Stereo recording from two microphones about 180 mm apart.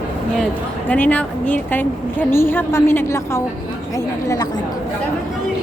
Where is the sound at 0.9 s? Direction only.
5° left (ahead or behind).